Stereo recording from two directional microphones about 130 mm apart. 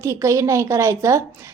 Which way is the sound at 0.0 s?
25° right (ahead or behind).